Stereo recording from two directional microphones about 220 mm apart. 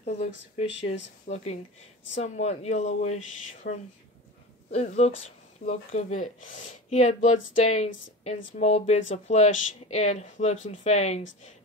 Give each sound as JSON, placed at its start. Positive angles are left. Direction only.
{"t": 0.0, "sound": "speech", "side_deg": 30}
{"t": 3.6, "sound": "speech", "side_deg": 40}
{"t": 4.6, "sound": "speech", "side_deg": 30}